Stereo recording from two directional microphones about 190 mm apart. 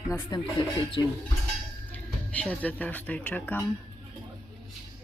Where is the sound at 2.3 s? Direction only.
5° left (ahead or behind).